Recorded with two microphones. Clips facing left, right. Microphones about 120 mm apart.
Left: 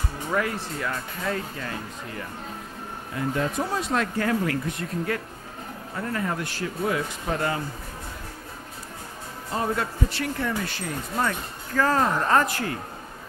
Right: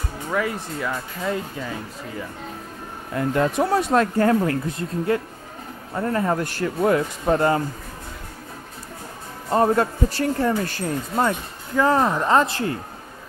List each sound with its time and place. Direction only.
0.3 s speech: centre (ahead or behind)
3.2 s speech: 65° right (ahead or behind)
3.9 s speech: 40° right (ahead or behind)
9.5 s speech: 45° right (ahead or behind)
11.2 s speech: 20° right (ahead or behind)